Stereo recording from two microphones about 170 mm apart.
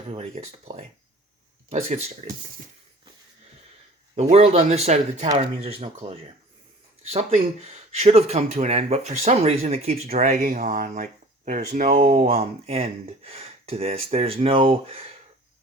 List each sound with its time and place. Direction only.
0.1 s speech: 40° right (ahead or behind)
4.1 s speech: 40° right (ahead or behind)
10.2 s speech: 50° right (ahead or behind)
12.1 s speech: 40° right (ahead or behind)